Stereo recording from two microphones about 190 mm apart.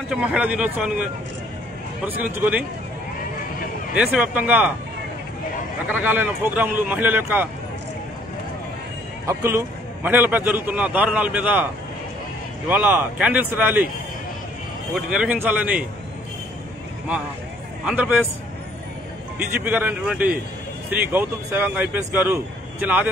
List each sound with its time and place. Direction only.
0.1 s a man's voice: 5° right (ahead or behind)
3.9 s a man's voice: 5° right (ahead or behind)
5.9 s a man's voice: 10° right (ahead or behind)
9.2 s a man's voice: 15° right (ahead or behind)
15.0 s a man's voice: 5° right (ahead or behind)
17.8 s a man's voice: 5° right (ahead or behind)
19.3 s a man's voice: 10° right (ahead or behind)